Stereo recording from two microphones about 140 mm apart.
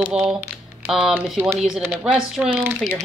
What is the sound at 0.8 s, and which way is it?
Speech, 5° right (ahead or behind).